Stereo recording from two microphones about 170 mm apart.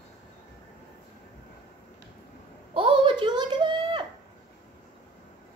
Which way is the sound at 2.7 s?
30° right (ahead or behind).